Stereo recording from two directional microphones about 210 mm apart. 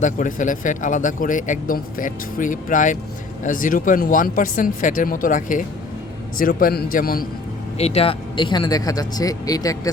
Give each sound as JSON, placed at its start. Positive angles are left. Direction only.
{"t": 0.0, "sound": "a man's voice", "side_deg": 40}
{"t": 7.8, "sound": "speech", "side_deg": 30}